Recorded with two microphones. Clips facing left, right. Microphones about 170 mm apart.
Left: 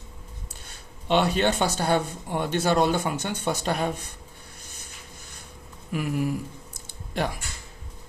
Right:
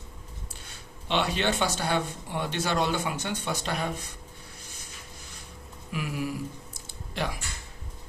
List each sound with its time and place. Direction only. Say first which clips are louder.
1.0 s speech: left 5 dB; 50° left (ahead or behind)
5.9 s speech: left 5 dB; 45° left (ahead or behind)